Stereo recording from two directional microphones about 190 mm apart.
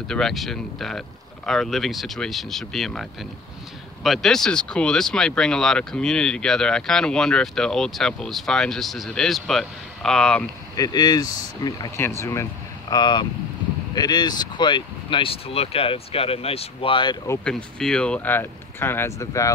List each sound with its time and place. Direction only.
0.1 s speech: centre (ahead or behind)
10.8 s speech: 20° left (ahead or behind)
17.7 s speech: 5° left (ahead or behind)